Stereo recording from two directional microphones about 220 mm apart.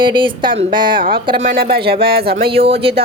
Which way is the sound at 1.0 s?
45° right (ahead or behind).